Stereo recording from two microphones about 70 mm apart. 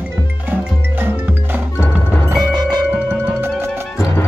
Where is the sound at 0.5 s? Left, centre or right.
Right.